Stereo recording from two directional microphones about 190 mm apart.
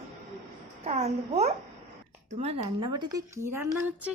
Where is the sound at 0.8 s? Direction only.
35° right (ahead or behind); by 4.1 s 10° right (ahead or behind).